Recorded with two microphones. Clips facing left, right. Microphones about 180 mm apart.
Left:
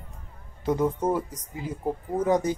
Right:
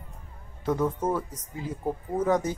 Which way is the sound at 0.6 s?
15° left (ahead or behind).